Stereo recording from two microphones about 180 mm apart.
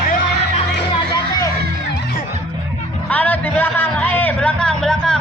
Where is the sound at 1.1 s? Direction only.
20° left (ahead or behind).